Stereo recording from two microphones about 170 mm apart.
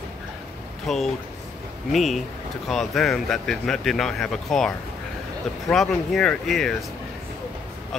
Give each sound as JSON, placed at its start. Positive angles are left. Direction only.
{"t": 0.8, "sound": "speech", "side_deg": 0}